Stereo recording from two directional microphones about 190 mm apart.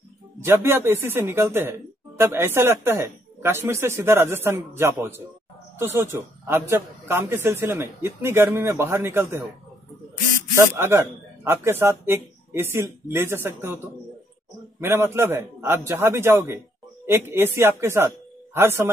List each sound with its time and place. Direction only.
0.5 s speech: 15° right (ahead or behind)
10.5 s speech: 15° right (ahead or behind)
14.8 s speech: 10° right (ahead or behind)